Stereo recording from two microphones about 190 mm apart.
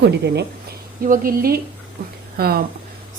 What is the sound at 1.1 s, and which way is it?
Speech, 50° right (ahead or behind).